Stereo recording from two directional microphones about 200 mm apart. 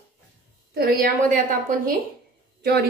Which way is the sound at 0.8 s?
45° right (ahead or behind).